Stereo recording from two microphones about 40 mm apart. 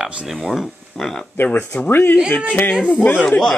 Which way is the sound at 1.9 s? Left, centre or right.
Left.